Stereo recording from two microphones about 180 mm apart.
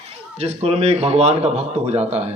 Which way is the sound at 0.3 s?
35° right (ahead or behind).